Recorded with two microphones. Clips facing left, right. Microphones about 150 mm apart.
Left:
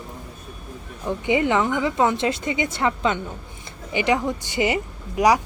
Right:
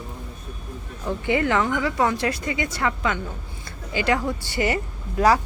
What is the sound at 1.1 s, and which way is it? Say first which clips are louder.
Speech: left 2 dB; 20° left (ahead or behind).